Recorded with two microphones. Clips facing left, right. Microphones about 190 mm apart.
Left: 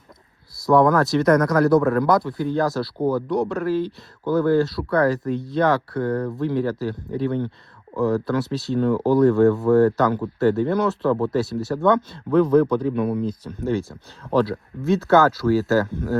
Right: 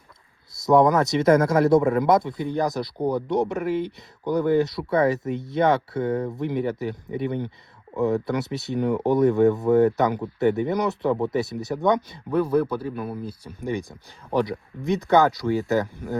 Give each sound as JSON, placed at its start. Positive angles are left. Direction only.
{"t": 0.6, "sound": "a man's voice", "side_deg": -20}